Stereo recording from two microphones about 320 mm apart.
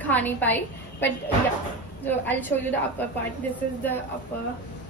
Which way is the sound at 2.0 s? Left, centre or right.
Centre.